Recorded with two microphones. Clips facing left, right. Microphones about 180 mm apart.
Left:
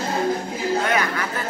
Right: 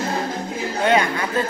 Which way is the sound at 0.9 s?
25° right (ahead or behind).